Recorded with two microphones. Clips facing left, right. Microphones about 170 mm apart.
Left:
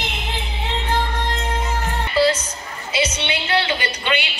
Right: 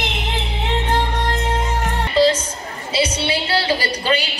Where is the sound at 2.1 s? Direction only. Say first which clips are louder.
Right 2 dB; 25° right (ahead or behind).